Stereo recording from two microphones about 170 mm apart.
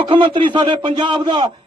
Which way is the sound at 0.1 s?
30° right (ahead or behind).